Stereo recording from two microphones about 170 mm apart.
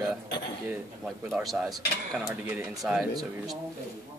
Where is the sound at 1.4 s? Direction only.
Centre (ahead or behind).